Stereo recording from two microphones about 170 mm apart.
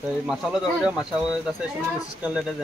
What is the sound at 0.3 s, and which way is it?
Speech, 5° right (ahead or behind).